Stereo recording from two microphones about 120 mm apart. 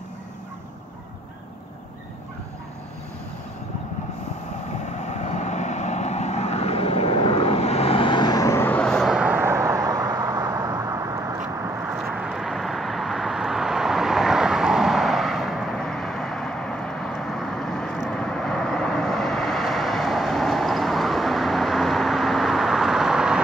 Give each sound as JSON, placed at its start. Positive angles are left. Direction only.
{"t": 4.9, "sound": "vehicle", "side_deg": 75}
{"t": 8.6, "sound": "vehicle", "side_deg": 10}
{"t": 9.1, "sound": "vehicle", "side_deg": -15}
{"t": 12.0, "sound": "vehicle", "side_deg": -5}